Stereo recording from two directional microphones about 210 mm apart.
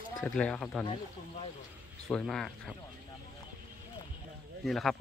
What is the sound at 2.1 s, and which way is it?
Speech, 5° left (ahead or behind).